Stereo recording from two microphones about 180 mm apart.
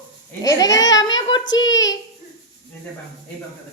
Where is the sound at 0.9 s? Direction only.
20° left (ahead or behind).